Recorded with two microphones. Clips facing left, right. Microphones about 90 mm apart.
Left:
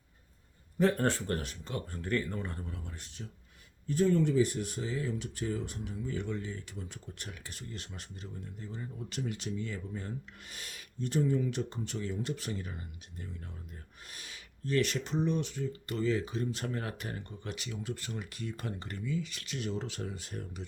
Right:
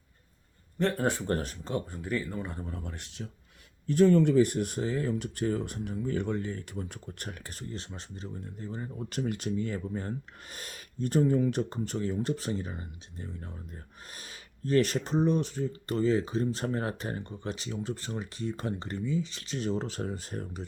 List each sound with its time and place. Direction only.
0.8 s speech: centre (ahead or behind)
1.3 s speech: 35° right (ahead or behind)
1.9 s speech: 10° right (ahead or behind)
2.8 s speech: 80° right; by 20.7 s 40° right (ahead or behind)